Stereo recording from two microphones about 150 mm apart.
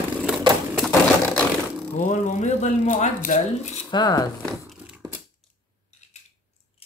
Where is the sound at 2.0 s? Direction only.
60° left (ahead or behind).